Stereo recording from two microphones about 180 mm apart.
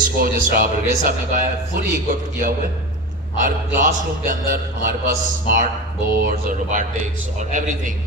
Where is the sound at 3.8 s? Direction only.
50° right (ahead or behind).